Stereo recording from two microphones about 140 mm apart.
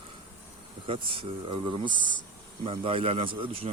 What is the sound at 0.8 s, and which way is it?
Speech, 40° right (ahead or behind).